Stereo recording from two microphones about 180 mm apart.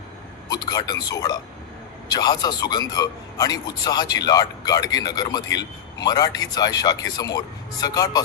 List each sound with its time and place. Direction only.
0.4 s a man's voice: 20° left (ahead or behind)